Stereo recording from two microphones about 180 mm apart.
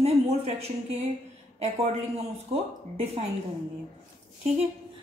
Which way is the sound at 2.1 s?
35° right (ahead or behind).